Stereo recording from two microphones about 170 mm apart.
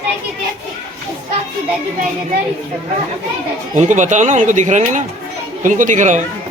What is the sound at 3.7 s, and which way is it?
Speech, 45° right (ahead or behind).